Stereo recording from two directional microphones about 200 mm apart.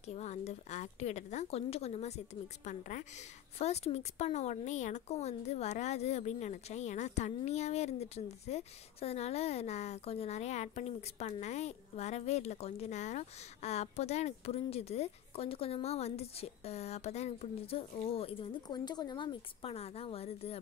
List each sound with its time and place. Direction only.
0.0 s a woman's voice: 35° left (ahead or behind)